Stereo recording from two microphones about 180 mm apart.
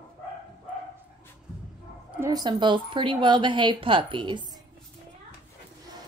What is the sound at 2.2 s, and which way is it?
A woman's voice, 20° right (ahead or behind).